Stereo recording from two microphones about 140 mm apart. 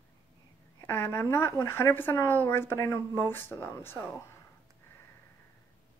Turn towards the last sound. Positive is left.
turn(degrees=15)  # may be behind; listen again after turning